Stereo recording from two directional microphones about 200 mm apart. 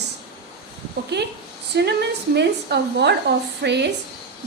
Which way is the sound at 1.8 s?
55° right (ahead or behind).